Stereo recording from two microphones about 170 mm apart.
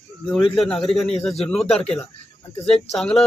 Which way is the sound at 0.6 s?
Centre (ahead or behind).